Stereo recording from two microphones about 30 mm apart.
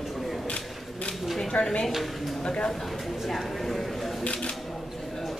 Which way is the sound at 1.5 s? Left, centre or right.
Left.